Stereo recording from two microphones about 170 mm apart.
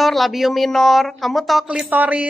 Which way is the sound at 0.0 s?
Centre (ahead or behind).